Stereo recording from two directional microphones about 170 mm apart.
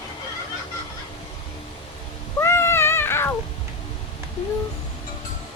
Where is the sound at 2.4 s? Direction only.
15° left (ahead or behind).